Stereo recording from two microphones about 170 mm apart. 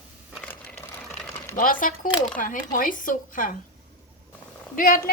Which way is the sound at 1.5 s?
55° left (ahead or behind).